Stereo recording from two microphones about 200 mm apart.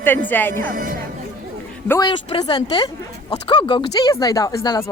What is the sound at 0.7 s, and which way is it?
Speech, 45° right (ahead or behind).